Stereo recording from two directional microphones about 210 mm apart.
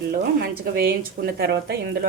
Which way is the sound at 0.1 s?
45° right (ahead or behind).